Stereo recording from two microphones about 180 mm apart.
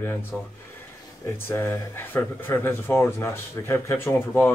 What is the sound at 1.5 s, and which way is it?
Speech, 15° left (ahead or behind).